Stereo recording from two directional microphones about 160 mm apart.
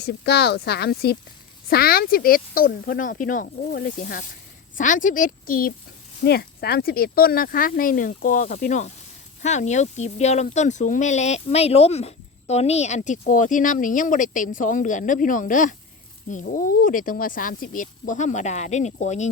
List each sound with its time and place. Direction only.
0.0 s speech: 90° left
1.7 s speech: 70° left (ahead or behind)
3.9 s speech: 50° left (ahead or behind)
6.2 s speech: 80° left; by 19.3 s 45° left (ahead or behind)